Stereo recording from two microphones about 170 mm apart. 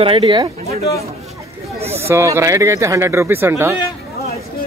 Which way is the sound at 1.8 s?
40° right (ahead or behind).